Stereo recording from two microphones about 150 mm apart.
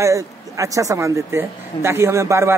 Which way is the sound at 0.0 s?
20° right (ahead or behind).